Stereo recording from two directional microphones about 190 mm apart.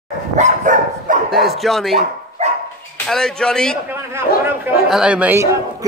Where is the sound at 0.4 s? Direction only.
45° right (ahead or behind).